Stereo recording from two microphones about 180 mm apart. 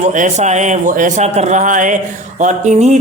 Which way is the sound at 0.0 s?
45° right (ahead or behind).